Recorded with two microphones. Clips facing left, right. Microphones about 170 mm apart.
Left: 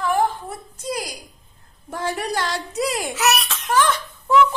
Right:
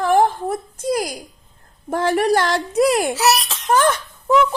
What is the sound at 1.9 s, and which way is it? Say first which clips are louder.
A woman's voice: right 8 dB; 60° right (ahead or behind).